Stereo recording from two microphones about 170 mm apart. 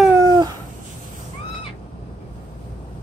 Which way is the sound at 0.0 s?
15° right (ahead or behind).